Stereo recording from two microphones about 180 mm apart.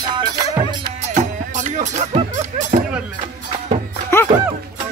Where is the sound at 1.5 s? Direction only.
40° right (ahead or behind).